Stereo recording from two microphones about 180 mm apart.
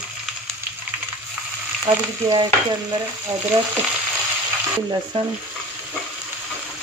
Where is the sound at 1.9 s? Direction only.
30° right (ahead or behind).